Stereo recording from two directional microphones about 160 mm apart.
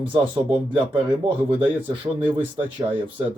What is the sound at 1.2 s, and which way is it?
Speech, 30° right (ahead or behind).